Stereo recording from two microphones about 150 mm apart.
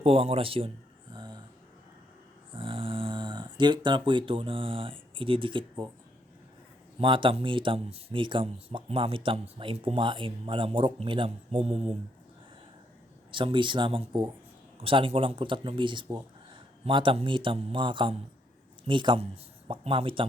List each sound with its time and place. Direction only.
0.0 s speech: 40° right (ahead or behind)
1.1 s a sound: 30° right (ahead or behind)
2.6 s speech: 35° right (ahead or behind)
7.0 s speech: 35° right (ahead or behind)
13.3 s speech: 35° right (ahead or behind)